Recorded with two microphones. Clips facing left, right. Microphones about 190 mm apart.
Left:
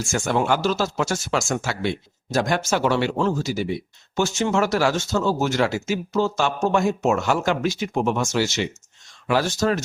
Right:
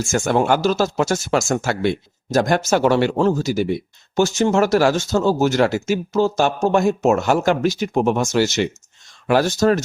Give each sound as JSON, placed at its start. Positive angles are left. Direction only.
{"t": 0.1, "sound": "speech", "side_deg": -45}